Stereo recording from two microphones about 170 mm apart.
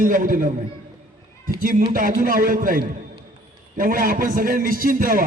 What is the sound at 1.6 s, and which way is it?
Speech, 55° right (ahead or behind).